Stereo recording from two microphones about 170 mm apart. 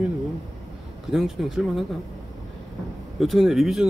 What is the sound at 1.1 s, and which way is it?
Speech, centre (ahead or behind).